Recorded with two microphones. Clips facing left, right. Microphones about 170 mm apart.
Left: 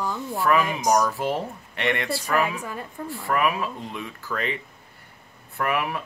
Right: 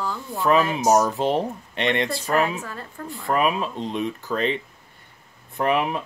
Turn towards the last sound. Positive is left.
turn(degrees=-20)  # may be behind; listen again after turning